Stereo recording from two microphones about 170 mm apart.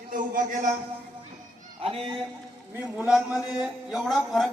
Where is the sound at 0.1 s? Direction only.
50° right (ahead or behind).